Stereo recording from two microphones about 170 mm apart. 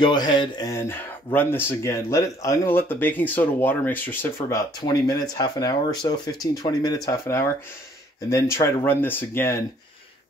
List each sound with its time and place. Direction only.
0.0 s speech: 25° left (ahead or behind)